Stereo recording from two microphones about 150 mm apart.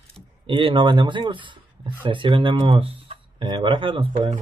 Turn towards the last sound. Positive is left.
turn(degrees=-35)  # may be behind; listen again after turning